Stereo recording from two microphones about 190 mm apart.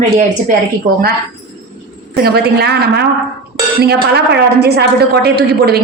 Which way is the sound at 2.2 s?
55° right (ahead or behind).